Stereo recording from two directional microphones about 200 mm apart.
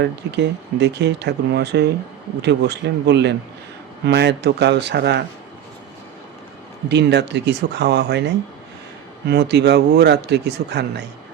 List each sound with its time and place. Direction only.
0.0 s speech: 60° right (ahead or behind)
6.8 s speech: 60° right (ahead or behind)
9.2 s speech: 55° right (ahead or behind)